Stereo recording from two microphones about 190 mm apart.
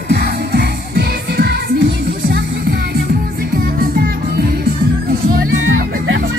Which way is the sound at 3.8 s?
55° right (ahead or behind).